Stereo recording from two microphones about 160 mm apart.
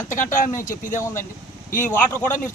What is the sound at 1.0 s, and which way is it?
Speech, 15° left (ahead or behind).